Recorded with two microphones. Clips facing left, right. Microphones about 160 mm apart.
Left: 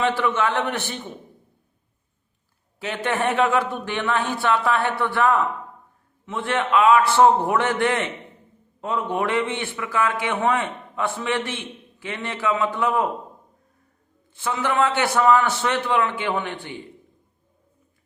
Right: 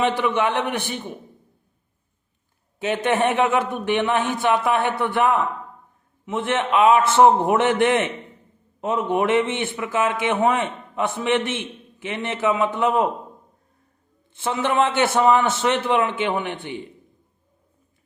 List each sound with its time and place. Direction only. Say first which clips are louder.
0.0 s a man's voice: right 1 dB; 20° right (ahead or behind)
2.7 s a man's voice: right 4 dB; 20° right (ahead or behind)
14.3 s a man's voice: right 2 dB; 25° right (ahead or behind)